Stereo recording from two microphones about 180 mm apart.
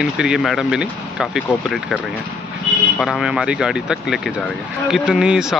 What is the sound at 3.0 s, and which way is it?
A man's voice, centre (ahead or behind).